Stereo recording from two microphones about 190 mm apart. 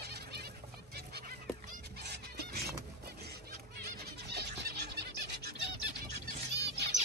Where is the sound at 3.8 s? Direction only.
60° right (ahead or behind).